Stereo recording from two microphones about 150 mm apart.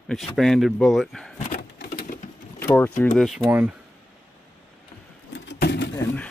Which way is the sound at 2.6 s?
15° left (ahead or behind).